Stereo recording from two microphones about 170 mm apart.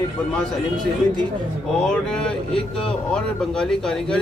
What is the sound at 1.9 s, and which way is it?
Speech, 5° left (ahead or behind).